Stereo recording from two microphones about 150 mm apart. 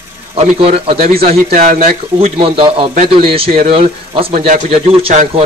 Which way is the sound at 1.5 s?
70° right (ahead or behind).